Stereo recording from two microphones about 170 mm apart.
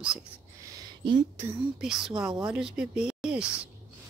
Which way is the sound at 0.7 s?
30° right (ahead or behind).